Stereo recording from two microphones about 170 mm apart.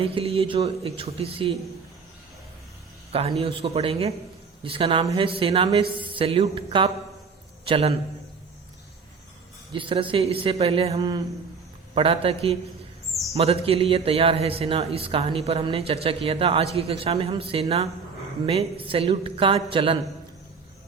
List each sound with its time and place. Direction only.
0.0 s a man's voice: 35° right (ahead or behind)
3.1 s a man's voice: 35° right (ahead or behind)
9.7 s a man's voice: 30° right (ahead or behind)